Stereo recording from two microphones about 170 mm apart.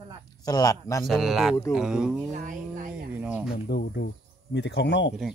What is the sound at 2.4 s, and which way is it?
Speech, 50° right (ahead or behind).